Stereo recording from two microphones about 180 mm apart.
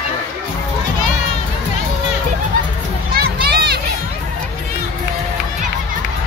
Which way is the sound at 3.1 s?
60° right (ahead or behind).